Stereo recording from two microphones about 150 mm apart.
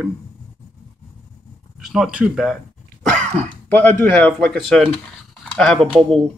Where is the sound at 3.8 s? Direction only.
10° left (ahead or behind).